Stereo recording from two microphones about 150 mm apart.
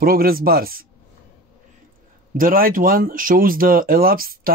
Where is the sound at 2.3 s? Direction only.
70° right (ahead or behind).